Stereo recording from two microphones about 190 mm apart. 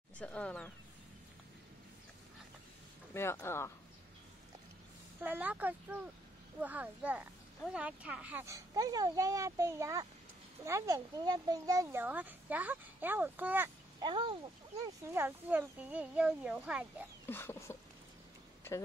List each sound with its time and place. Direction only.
0.2 s speech: 5° left (ahead or behind)
3.2 s speech: 15° left (ahead or behind)
5.2 s speech: 10° right (ahead or behind)
14.0 s speech: 25° right (ahead or behind)
14.9 s speech: 10° right (ahead or behind)
17.3 s speech: 10° left (ahead or behind)